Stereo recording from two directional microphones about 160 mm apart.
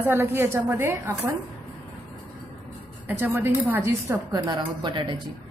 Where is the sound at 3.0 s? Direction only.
15° right (ahead or behind); by 5.2 s 30° right (ahead or behind).